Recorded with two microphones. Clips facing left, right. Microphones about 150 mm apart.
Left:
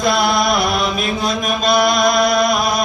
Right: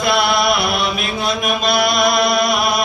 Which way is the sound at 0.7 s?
Centre (ahead or behind).